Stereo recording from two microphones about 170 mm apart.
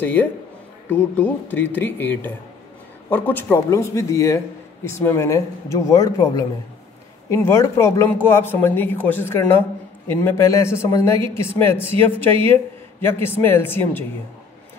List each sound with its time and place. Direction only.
0.0 s speech: 10° left (ahead or behind)